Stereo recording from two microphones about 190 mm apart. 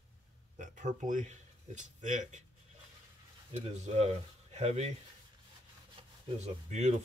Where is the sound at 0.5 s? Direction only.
40° right (ahead or behind).